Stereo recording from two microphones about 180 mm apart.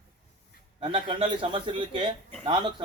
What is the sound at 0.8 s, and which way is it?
Speech, 30° right (ahead or behind).